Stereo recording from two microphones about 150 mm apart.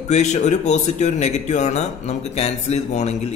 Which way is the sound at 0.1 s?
50° left (ahead or behind).